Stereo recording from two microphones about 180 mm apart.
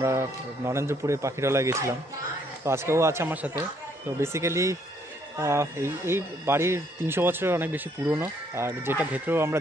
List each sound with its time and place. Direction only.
0.0 s speech: 15° right (ahead or behind)